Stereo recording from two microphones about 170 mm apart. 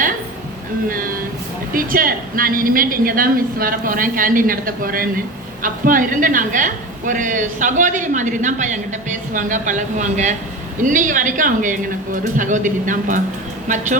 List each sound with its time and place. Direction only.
0.9 s a woman's voice: 55° right (ahead or behind)